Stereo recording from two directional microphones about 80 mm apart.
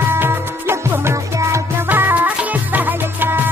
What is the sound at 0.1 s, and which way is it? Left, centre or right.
Music, right.